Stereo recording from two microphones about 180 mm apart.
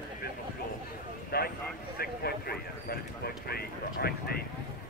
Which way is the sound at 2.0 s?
60° left (ahead or behind).